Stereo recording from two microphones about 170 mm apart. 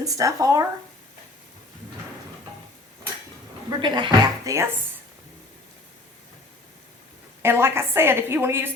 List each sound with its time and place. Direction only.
0.0 s speech: 20° right (ahead or behind)
3.7 s speech: 25° right (ahead or behind)
7.4 s a woman's voice: 15° right (ahead or behind)